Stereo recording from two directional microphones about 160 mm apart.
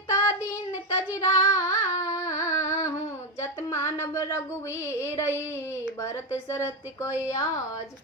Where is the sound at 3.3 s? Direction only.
20° left (ahead or behind).